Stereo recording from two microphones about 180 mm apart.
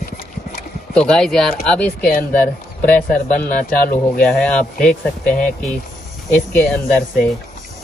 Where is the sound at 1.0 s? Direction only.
5° left (ahead or behind).